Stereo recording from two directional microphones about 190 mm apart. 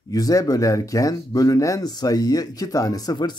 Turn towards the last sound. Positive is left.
turn(degrees=20)  # may be behind; listen again after turning